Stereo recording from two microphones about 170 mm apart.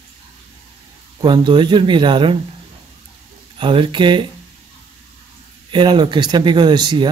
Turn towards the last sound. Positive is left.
turn(degrees=-25)  # may be behind; listen again after turning